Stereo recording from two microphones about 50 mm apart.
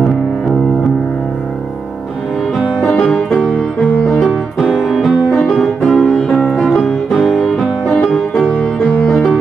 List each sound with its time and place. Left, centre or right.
2.8 s music: left
3.1 s music: centre
4.7 s music: centre